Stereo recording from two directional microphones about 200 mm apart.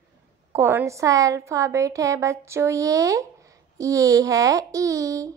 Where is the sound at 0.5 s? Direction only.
15° right (ahead or behind).